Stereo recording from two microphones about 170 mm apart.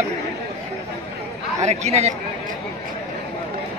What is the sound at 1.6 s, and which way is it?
Speech, 40° right (ahead or behind).